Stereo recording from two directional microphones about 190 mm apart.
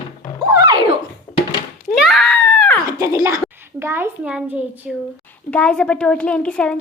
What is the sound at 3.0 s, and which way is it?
A child's voice, 15° right (ahead or behind).